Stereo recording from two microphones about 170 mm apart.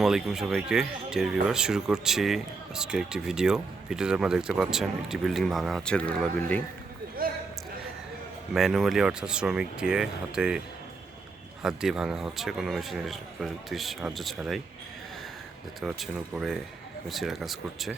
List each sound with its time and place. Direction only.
0.0 s speech: centre (ahead or behind)
7.2 s a sound: 60° right (ahead or behind)
8.5 s speech: centre (ahead or behind)
11.6 s speech: 5° right (ahead or behind)
15.8 s speech: 5° right (ahead or behind)